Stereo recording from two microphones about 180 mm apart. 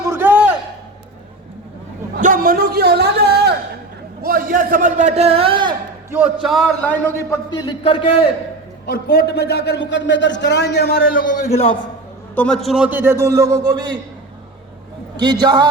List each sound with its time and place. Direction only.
0.0 s a sound: 10° right (ahead or behind)
2.1 s a sound: 50° right (ahead or behind)
4.2 s a sound: 55° right (ahead or behind); by 5.7 s 30° right (ahead or behind)
6.1 s a man's voice: 10° right (ahead or behind); by 7.3 s 10° left (ahead or behind)
7.5 s a man's voice: 25° left (ahead or behind)
8.9 s a man's voice: 65° left (ahead or behind)
11.5 s a man's voice: 35° left (ahead or behind)
12.3 s a man's voice: 5° left (ahead or behind); by 14.0 s 20° right (ahead or behind)
15.1 s a man's voice: 25° right (ahead or behind)